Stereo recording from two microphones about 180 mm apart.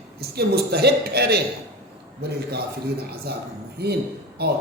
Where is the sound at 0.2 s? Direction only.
60° right (ahead or behind).